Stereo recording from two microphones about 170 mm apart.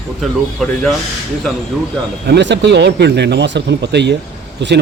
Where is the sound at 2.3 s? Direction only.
85° right.